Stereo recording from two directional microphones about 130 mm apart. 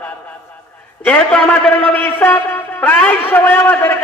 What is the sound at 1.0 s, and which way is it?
A man's voice, 10° left (ahead or behind).